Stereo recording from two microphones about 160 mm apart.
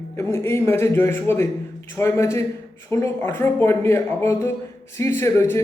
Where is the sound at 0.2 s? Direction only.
15° left (ahead or behind).